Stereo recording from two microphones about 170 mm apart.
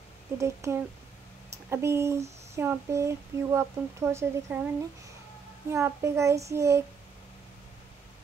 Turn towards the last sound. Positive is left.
turn(degrees=-15)  # may be behind; listen again after turning